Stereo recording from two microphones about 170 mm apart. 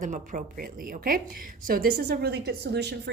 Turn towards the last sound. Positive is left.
turn(degrees=-75)  # may be behind; listen again after turning